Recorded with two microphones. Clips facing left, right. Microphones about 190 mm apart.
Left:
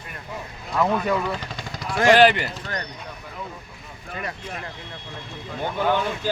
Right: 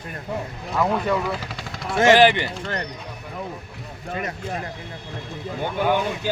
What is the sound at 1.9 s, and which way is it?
Speech, 25° right (ahead or behind).